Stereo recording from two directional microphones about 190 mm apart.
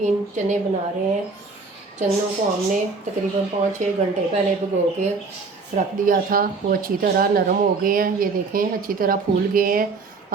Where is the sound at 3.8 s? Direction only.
40° right (ahead or behind).